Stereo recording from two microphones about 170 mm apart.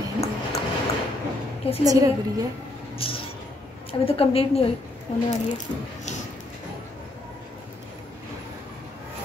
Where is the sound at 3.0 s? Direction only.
35° left (ahead or behind).